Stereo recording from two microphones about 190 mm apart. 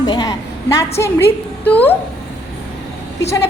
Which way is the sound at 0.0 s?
20° left (ahead or behind).